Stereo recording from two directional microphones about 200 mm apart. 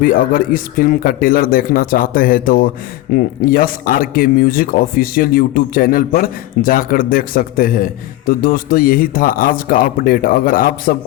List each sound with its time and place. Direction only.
0.0 s speech: 45° left (ahead or behind)